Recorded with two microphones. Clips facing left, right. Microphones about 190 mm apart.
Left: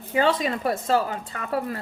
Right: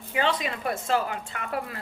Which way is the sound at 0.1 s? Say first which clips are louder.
Left 5 dB; 40° left (ahead or behind).